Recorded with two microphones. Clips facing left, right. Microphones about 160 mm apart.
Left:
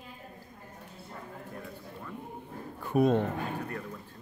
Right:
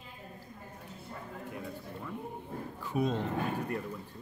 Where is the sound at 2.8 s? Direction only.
55° left (ahead or behind).